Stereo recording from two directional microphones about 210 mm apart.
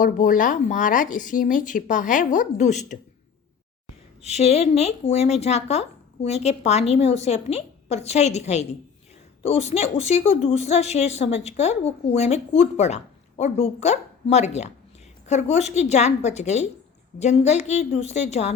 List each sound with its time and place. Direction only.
0.0 s a woman's voice: 40° left (ahead or behind)
4.2 s a woman's voice: 30° left (ahead or behind)